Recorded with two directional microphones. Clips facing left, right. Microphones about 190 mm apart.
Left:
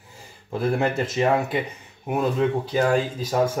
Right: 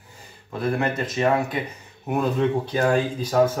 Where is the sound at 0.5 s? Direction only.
25° left (ahead or behind).